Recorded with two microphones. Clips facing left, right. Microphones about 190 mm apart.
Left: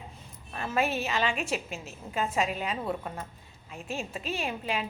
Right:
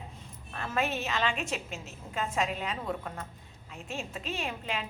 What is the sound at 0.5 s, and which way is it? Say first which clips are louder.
Speech: left 3 dB; 10° left (ahead or behind).